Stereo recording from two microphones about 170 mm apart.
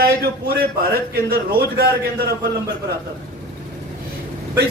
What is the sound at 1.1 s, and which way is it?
A man's voice, 65° right (ahead or behind).